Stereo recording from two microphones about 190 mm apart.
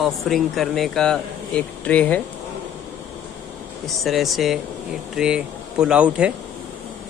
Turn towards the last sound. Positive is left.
turn(degrees=-5)  # may be behind; listen again after turning